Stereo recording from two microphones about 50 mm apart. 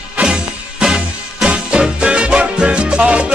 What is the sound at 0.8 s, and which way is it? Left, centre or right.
Music, centre.